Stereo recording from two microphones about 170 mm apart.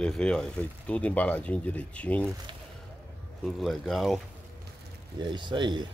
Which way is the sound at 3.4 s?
Centre (ahead or behind).